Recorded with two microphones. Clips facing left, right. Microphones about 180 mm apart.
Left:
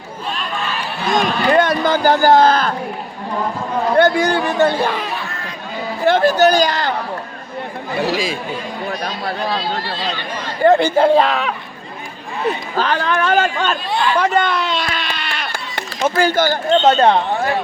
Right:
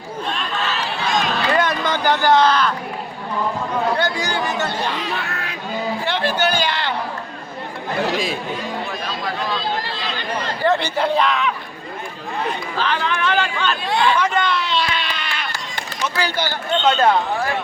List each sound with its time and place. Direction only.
1.0 s run: 50° left (ahead or behind)
1.6 s a man's voice: 40° left (ahead or behind)
3.9 s speech: 55° left (ahead or behind)
5.2 s a sound: 65° right (ahead or behind)
6.1 s a man's voice: 45° left (ahead or behind)
7.9 s speech: 5° left (ahead or behind)
8.9 s chatter: 40° left (ahead or behind)
10.6 s a sound: 50° left (ahead or behind)
10.9 s speech: 50° left (ahead or behind)
11.3 s speech: 35° left (ahead or behind)
12.7 s speech: 45° left (ahead or behind)
14.2 s a sound: 45° left (ahead or behind)
16.0 s speech: 50° left (ahead or behind); by 17.6 s 30° left (ahead or behind)